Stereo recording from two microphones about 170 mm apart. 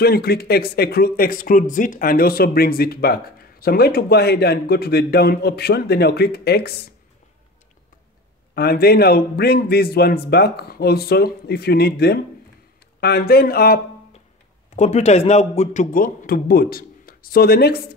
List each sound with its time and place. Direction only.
0.0 s a man's voice: 65° left (ahead or behind)
8.5 s a man's voice: 65° left (ahead or behind)
14.8 s a man's voice: 40° left (ahead or behind); by 17.8 s 65° left (ahead or behind)